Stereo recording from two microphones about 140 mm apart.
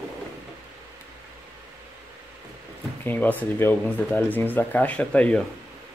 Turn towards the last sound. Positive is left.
turn(degrees=10)  # may be behind; listen again after turning